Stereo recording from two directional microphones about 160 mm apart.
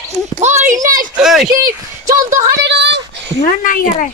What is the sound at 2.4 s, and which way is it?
Speech, 90° right.